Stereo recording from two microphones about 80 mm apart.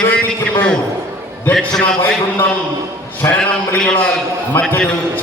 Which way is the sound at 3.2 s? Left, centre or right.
Left.